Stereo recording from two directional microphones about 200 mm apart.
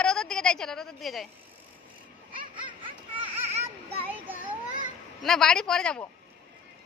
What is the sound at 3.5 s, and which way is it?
Children playing, 30° right (ahead or behind).